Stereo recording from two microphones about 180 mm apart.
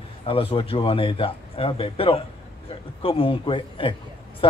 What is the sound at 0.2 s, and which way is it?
A man's voice, 30° left (ahead or behind).